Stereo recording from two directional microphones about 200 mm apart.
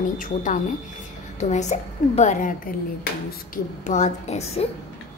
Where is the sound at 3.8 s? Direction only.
35° left (ahead or behind).